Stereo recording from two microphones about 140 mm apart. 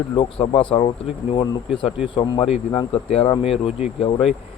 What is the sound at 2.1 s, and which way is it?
Speech, 35° left (ahead or behind).